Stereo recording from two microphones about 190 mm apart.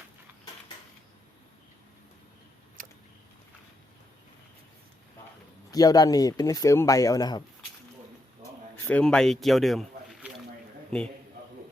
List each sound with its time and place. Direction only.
5.7 s speech: 20° left (ahead or behind); by 9.8 s centre (ahead or behind)
10.9 s a man's voice: centre (ahead or behind)